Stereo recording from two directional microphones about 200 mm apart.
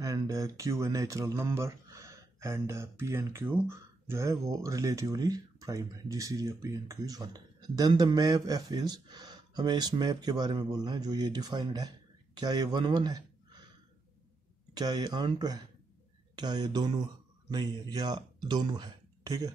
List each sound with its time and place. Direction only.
0.0 s speech: 15° right (ahead or behind)
14.7 s speech: 20° right (ahead or behind)